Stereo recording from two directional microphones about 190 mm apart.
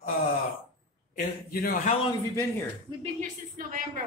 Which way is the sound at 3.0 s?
40° right (ahead or behind).